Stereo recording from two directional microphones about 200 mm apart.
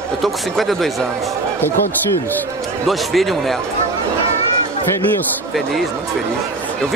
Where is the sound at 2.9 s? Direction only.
Centre (ahead or behind).